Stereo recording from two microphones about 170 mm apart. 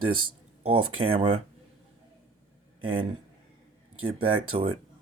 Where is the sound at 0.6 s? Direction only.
30° right (ahead or behind).